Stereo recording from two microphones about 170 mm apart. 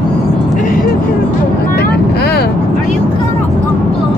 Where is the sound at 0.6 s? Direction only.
60° left (ahead or behind).